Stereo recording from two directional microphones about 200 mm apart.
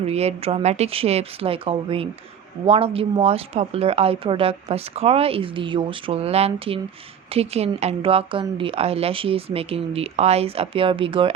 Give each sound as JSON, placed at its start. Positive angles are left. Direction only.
{"t": 0.0, "sound": "speech", "side_deg": -30}